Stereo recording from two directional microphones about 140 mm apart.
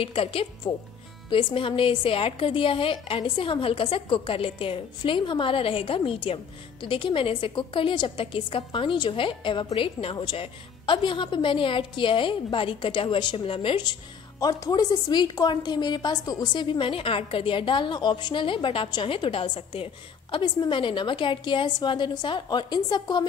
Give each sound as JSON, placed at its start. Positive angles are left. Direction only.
{"t": 0.0, "sound": "a woman's voice", "side_deg": 40}